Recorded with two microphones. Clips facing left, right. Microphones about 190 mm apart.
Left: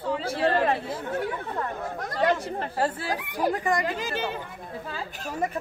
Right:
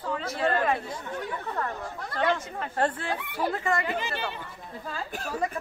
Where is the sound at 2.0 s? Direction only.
40° left (ahead or behind).